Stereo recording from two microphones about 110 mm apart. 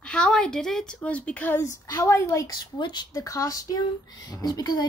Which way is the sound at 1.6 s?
25° left (ahead or behind).